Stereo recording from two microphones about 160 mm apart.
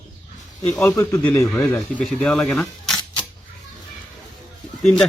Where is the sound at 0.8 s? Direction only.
15° left (ahead or behind).